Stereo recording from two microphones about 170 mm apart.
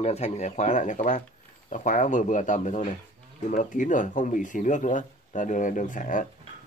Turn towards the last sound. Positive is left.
turn(degrees=50)  # may be behind; listen again after turning